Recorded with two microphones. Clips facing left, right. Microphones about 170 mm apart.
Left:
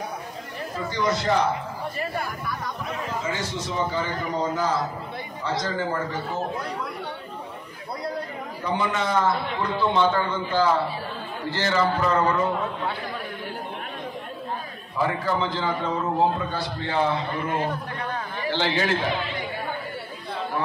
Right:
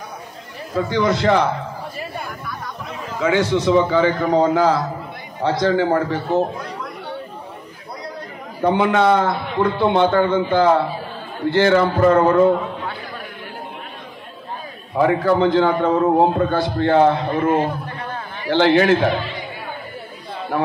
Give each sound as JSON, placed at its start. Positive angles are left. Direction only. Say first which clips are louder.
{"t": 0.7, "sound": "a man's voice", "louder": "right 7 dB", "side_deg": -65}
{"t": 3.2, "sound": "a man's voice", "louder": "right 17 dB", "side_deg": -70}
{"t": 8.6, "sound": "a man's voice", "louder": "right 10 dB", "side_deg": -60}
{"t": 15.0, "sound": "a man's voice", "louder": "right 9 dB", "side_deg": -55}